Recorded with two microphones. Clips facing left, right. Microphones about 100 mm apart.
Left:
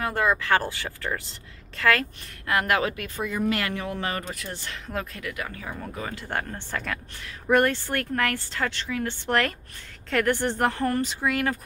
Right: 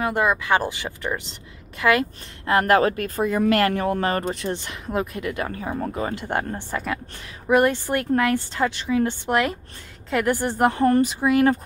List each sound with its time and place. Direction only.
0.0 s speech: 15° right (ahead or behind)
2.4 s speech: 35° right (ahead or behind)
4.3 s speech: 25° right (ahead or behind)
5.3 s speech: 35° right (ahead or behind)
6.1 s speech: 20° right (ahead or behind)